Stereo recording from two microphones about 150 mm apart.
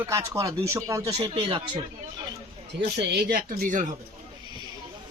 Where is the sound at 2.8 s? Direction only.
90° right; by 3.9 s 65° right (ahead or behind).